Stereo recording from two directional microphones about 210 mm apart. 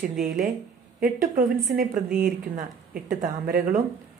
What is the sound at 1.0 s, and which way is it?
Speech, 45° right (ahead or behind).